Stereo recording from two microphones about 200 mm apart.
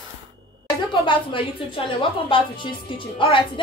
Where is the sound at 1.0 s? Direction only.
25° left (ahead or behind).